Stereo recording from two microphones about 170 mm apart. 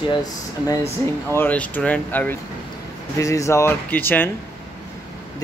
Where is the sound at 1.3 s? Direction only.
10° left (ahead or behind).